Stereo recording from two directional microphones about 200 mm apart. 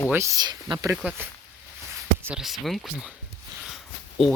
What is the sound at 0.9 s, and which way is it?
Speech, 5° right (ahead or behind).